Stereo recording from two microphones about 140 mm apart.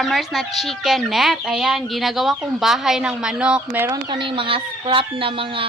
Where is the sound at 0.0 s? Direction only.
Centre (ahead or behind).